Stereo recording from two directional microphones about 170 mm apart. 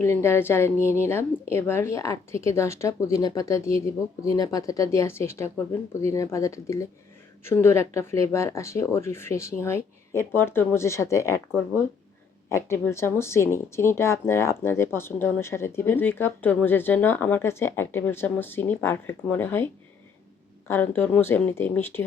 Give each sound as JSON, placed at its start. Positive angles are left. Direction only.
{"t": 0.0, "sound": "speech", "side_deg": 15}